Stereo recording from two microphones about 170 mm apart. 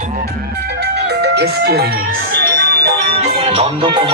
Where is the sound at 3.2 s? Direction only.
35° right (ahead or behind).